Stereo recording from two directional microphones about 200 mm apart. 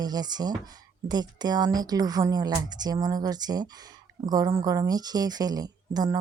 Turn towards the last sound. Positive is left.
turn(degrees=-20)  # may be behind; listen again after turning